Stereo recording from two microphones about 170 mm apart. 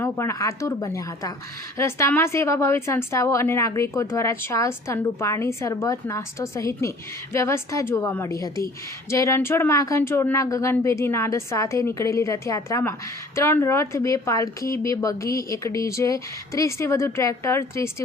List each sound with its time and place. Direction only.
0.0 s speech: 15° left (ahead or behind)